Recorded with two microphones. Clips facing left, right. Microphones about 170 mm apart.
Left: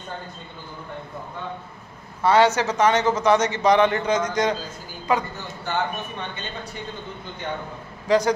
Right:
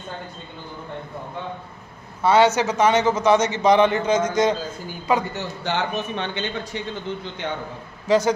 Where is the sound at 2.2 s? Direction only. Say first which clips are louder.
Right 1 dB; 20° right (ahead or behind).